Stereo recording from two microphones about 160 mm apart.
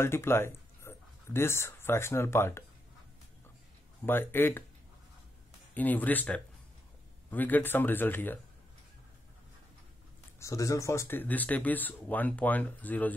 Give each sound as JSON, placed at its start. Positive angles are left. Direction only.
{"t": 0.0, "sound": "speech", "side_deg": 15}
{"t": 4.0, "sound": "speech", "side_deg": 15}
{"t": 5.8, "sound": "speech", "side_deg": 10}
{"t": 10.4, "sound": "speech", "side_deg": 20}